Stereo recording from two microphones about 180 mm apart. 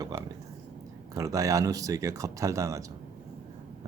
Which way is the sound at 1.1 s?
20° right (ahead or behind).